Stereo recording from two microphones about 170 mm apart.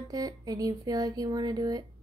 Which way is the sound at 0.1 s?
20° right (ahead or behind).